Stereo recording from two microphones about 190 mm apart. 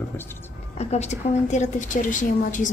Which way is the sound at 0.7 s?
35° left (ahead or behind).